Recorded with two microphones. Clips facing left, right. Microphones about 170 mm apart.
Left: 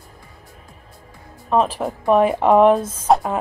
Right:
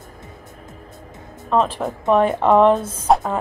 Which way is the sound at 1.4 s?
10° left (ahead or behind).